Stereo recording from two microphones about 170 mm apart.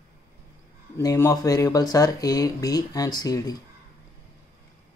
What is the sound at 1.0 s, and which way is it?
Speech, 20° left (ahead or behind).